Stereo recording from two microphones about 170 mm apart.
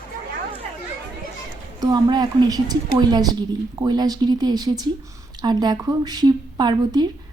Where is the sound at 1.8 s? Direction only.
25° right (ahead or behind).